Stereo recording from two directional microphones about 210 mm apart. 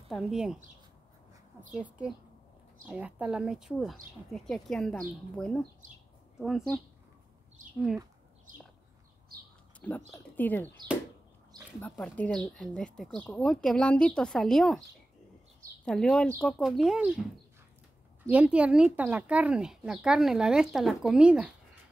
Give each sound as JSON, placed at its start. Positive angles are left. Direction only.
{"t": 0.1, "sound": "speech", "side_deg": 0}
{"t": 1.8, "sound": "speech", "side_deg": -5}
{"t": 8.5, "sound": "a sound", "side_deg": -40}
{"t": 9.8, "sound": "speech", "side_deg": 5}
{"t": 11.8, "sound": "speech", "side_deg": 5}
{"t": 15.8, "sound": "speech", "side_deg": 5}